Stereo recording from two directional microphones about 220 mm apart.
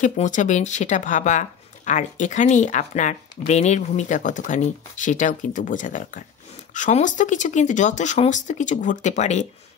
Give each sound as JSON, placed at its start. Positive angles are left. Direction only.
{"t": 0.0, "sound": "speech", "side_deg": 35}